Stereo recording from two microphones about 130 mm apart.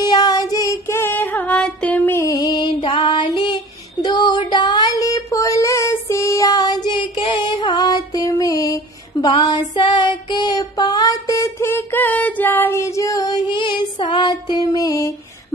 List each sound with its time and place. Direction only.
0.0 s child singing: 30° left (ahead or behind)